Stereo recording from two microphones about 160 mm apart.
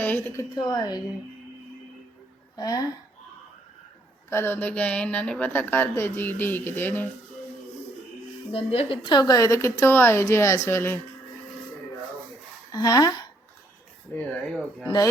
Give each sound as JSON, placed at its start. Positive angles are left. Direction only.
{"t": 0.0, "sound": "a woman's voice", "side_deg": 10}
{"t": 0.5, "sound": "speech", "side_deg": 25}
{"t": 2.6, "sound": "speech", "side_deg": 25}
{"t": 4.3, "sound": "a woman's voice", "side_deg": 15}
{"t": 8.5, "sound": "a woman's voice", "side_deg": 40}
{"t": 9.0, "sound": "a woman's voice", "side_deg": 25}
{"t": 12.7, "sound": "speech", "side_deg": 25}
{"t": 14.2, "sound": "a woman's voice", "side_deg": 10}